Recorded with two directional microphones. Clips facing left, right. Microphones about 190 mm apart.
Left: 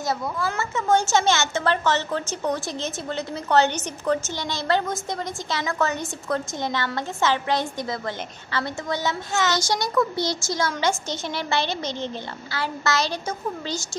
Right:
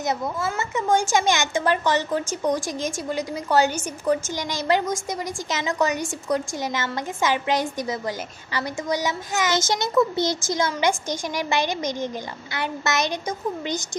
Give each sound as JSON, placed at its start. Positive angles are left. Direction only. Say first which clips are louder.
{"t": 0.4, "sound": "a woman's voice", "louder": "right 1 dB", "side_deg": -15}